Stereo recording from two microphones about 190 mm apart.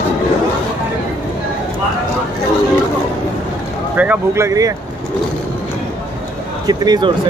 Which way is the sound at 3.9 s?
10° right (ahead or behind).